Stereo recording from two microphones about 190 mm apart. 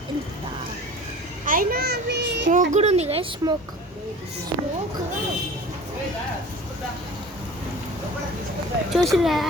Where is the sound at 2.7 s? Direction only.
35° right (ahead or behind).